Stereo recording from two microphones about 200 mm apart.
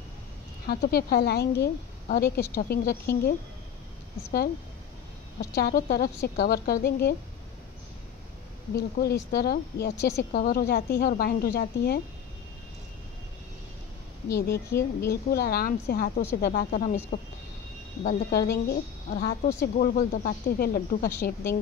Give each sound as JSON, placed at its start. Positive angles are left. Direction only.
{"t": 0.7, "sound": "a woman's voice", "side_deg": 50}
{"t": 5.4, "sound": "a woman's voice", "side_deg": 55}
{"t": 8.7, "sound": "a woman's voice", "side_deg": 50}
{"t": 14.7, "sound": "speech", "side_deg": 15}
{"t": 15.0, "sound": "a woman's voice", "side_deg": 50}
{"t": 18.3, "sound": "a woman's voice", "side_deg": 50}